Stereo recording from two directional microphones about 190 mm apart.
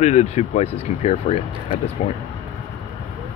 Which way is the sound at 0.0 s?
35° left (ahead or behind).